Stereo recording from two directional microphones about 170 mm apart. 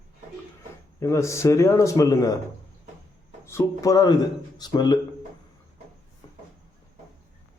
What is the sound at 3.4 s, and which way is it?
A man's voice, 15° left (ahead or behind).